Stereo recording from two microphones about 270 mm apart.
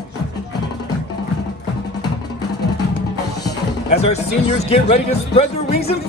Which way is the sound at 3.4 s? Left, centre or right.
Left.